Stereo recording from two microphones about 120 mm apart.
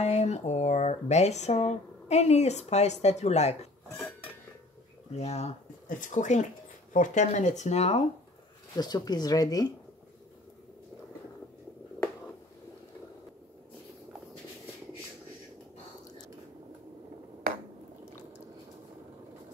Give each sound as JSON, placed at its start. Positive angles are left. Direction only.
{"t": 0.0, "sound": "speech", "side_deg": 65}
{"t": 5.1, "sound": "speech", "side_deg": 65}
{"t": 8.7, "sound": "speech", "side_deg": 35}